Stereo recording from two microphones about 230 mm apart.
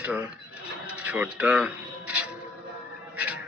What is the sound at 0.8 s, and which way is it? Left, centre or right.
Music, centre.